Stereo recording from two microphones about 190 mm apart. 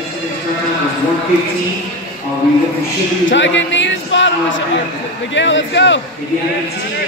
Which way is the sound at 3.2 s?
75° left (ahead or behind).